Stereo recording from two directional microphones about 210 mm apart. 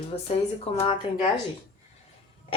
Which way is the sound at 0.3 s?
30° left (ahead or behind).